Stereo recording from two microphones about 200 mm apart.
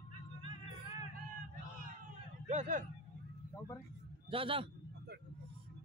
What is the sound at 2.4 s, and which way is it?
Speech, 35° right (ahead or behind).